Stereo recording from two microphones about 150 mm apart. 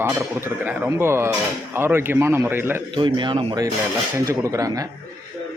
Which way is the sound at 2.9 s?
30° right (ahead or behind).